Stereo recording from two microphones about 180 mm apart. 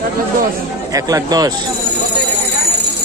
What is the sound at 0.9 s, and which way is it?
Speech, 20° right (ahead or behind).